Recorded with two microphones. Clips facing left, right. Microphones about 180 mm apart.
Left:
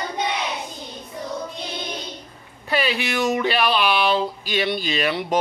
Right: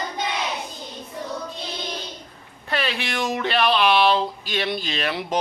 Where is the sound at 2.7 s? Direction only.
5° left (ahead or behind).